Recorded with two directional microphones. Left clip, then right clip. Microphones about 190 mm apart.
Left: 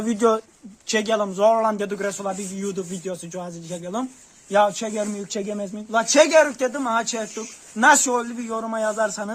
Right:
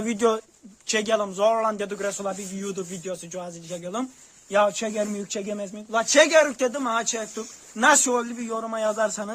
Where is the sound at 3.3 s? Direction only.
30° right (ahead or behind).